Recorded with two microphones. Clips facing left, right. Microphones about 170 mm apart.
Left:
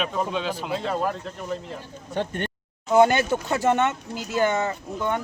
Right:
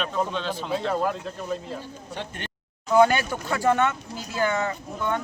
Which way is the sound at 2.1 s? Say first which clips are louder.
Left 9 dB; 50° left (ahead or behind).